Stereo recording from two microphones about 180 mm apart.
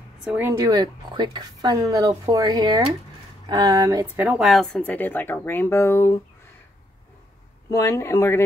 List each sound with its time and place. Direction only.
0.2 s speech: 5° right (ahead or behind)
0.5 s a woman's voice: 15° right (ahead or behind); by 6.2 s 15° left (ahead or behind)
7.7 s speech: 15° left (ahead or behind)